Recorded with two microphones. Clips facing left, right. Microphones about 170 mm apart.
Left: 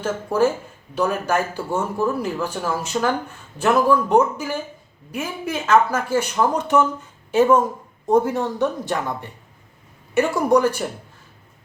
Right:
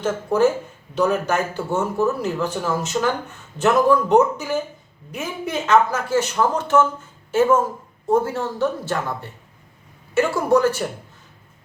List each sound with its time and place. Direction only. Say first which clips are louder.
0.0 s speech: right 1 dB; 10° left (ahead or behind)
7.3 s speech: left 1 dB; 15° left (ahead or behind)